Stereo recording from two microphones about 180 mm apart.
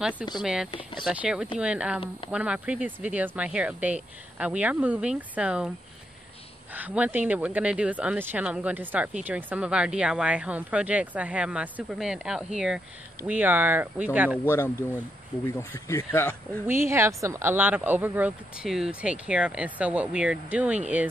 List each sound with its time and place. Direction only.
0.4 s speech: 5° right (ahead or behind)
0.7 s speech: 30° left (ahead or behind)
1.0 s speech: 5° right (ahead or behind)
6.7 s speech: 10° right (ahead or behind)
14.5 s speech: 15° left (ahead or behind)
16.6 s speech: 15° right (ahead or behind)